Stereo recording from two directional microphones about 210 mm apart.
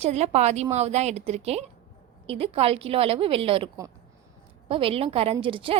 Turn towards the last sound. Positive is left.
turn(degrees=-25)  # may be behind; listen again after turning